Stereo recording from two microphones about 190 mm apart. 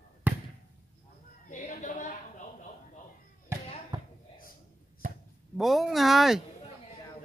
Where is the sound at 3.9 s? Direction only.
20° right (ahead or behind).